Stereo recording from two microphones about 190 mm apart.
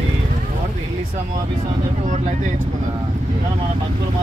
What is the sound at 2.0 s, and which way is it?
Speech, 40° right (ahead or behind).